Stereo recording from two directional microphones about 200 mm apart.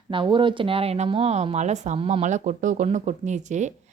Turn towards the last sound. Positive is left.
turn(degrees=-35)  # may be behind; listen again after turning